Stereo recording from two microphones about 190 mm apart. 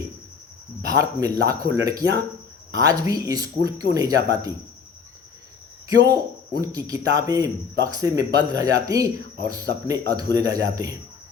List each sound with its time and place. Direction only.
0.8 s speech: 20° right (ahead or behind)
6.1 s speech: 20° right (ahead or behind)